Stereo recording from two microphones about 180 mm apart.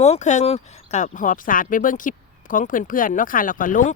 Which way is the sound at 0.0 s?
40° left (ahead or behind).